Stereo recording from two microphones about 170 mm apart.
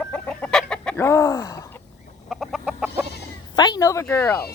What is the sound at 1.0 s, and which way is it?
Speech, 15° left (ahead or behind).